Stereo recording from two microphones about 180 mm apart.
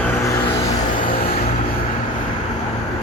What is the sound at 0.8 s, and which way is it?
Music, 55° left (ahead or behind).